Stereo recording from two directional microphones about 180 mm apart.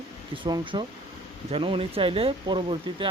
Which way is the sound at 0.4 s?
25° right (ahead or behind).